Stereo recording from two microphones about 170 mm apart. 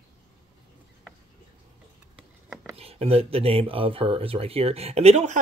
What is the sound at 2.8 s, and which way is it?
Speech, 35° right (ahead or behind).